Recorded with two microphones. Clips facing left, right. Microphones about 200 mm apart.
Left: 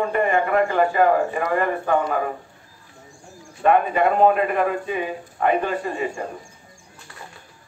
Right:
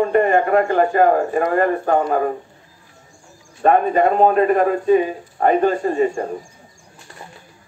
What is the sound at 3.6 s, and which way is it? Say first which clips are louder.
A man's voice: right 3 dB; 40° right (ahead or behind).